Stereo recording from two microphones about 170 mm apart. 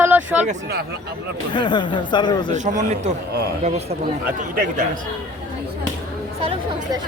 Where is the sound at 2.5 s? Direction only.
45° right (ahead or behind).